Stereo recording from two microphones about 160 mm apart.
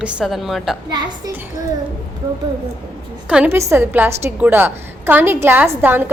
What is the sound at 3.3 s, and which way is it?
A woman's voice, 10° right (ahead or behind).